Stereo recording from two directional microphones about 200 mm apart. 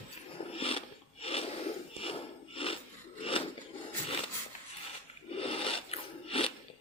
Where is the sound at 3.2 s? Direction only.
25° left (ahead or behind).